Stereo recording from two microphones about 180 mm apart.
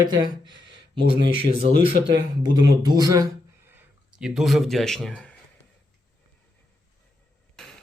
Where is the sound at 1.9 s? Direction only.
70° right (ahead or behind).